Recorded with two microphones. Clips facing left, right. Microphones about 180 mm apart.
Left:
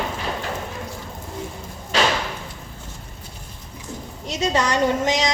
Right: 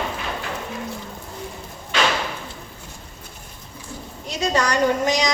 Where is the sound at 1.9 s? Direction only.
35° left (ahead or behind).